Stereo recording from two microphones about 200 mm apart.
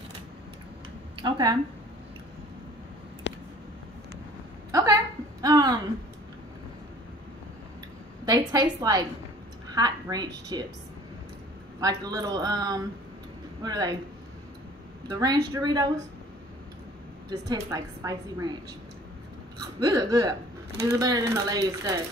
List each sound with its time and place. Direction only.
1.1 s speech: 20° right (ahead or behind)
3.3 s a sound: 60° left (ahead or behind)
4.6 s a sound: 15° right (ahead or behind)
5.4 s speech: 20° right (ahead or behind)
8.3 s a woman's voice: 20° right (ahead or behind)
11.8 s a woman's voice: 20° right (ahead or behind)
15.0 s a woman's voice: 15° right (ahead or behind)
17.3 s a woman's voice: 20° right (ahead or behind)
19.8 s a woman's voice: 20° right (ahead or behind)